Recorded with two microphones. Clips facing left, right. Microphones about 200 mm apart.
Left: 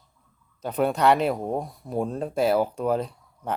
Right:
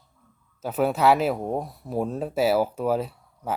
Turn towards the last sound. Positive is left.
turn(degrees=-5)  # may be behind; listen again after turning